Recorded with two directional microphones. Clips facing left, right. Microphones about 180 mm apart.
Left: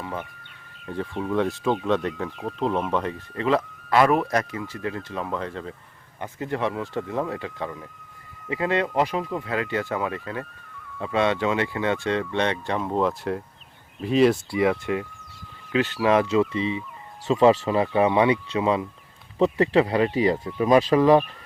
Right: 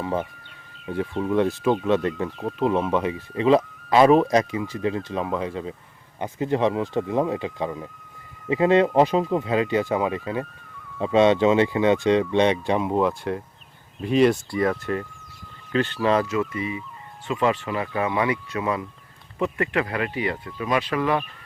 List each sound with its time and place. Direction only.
0.0 s speech: 25° right (ahead or behind)
0.9 s speech: 5° right (ahead or behind)
16.2 s speech: 25° left (ahead or behind)